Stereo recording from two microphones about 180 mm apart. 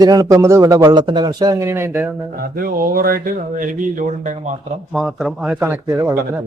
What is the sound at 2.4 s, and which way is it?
Speech, 55° right (ahead or behind).